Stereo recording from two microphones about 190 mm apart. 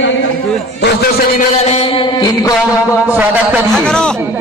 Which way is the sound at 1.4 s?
35° left (ahead or behind).